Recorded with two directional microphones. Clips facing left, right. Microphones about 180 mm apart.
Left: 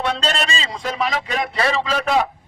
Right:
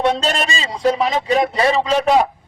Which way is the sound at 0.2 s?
15° right (ahead or behind).